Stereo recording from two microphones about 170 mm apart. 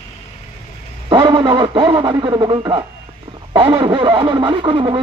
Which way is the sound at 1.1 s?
25° right (ahead or behind).